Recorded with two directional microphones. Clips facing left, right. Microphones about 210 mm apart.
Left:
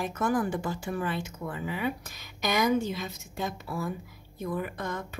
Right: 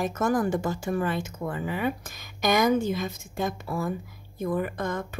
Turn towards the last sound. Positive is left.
turn(degrees=-50)  # may be behind; listen again after turning